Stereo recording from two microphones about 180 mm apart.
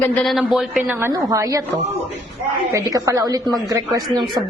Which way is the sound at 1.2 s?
20° right (ahead or behind).